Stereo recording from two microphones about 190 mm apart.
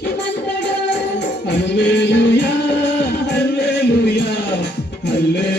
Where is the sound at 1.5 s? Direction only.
65° left (ahead or behind).